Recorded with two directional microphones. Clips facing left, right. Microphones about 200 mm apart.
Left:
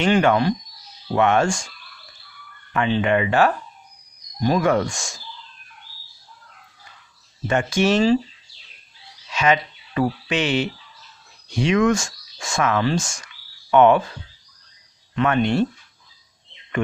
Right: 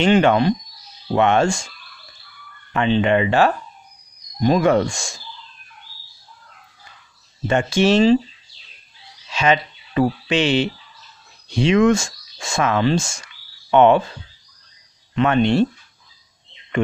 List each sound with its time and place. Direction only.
0.0 s speech: 25° right (ahead or behind)
2.7 s speech: 25° right (ahead or behind)
7.4 s speech: 25° right (ahead or behind)
9.3 s speech: 30° right (ahead or behind)
15.1 s speech: 25° right (ahead or behind)